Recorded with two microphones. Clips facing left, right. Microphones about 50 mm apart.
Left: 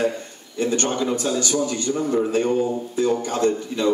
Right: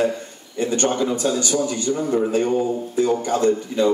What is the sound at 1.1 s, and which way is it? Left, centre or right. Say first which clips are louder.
Speech: right 1 dB; right.